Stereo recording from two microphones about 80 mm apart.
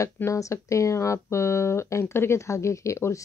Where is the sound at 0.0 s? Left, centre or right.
Left.